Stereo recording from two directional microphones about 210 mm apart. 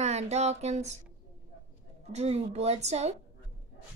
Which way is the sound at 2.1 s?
30° right (ahead or behind).